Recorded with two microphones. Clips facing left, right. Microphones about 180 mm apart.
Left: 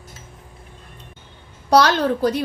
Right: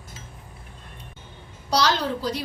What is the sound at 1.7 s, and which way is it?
Speech, 55° left (ahead or behind).